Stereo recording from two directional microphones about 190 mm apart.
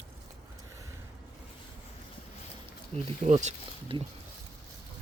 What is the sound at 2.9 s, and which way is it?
Speech, 40° right (ahead or behind).